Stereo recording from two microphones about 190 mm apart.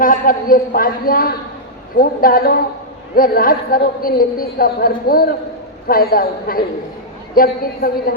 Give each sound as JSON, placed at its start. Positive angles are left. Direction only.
{"t": 0.0, "sound": "a woman's voice", "side_deg": 45}